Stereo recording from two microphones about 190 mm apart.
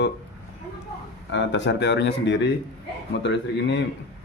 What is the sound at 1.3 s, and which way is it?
A man's voice, 65° left (ahead or behind).